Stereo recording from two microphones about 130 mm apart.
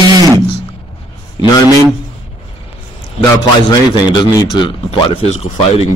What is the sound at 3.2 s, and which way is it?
A man's voice, 30° left (ahead or behind).